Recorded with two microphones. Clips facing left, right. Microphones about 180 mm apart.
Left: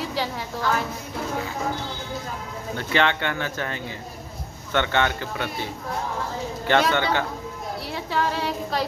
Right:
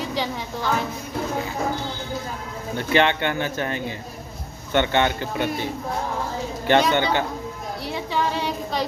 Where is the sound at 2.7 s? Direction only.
20° right (ahead or behind).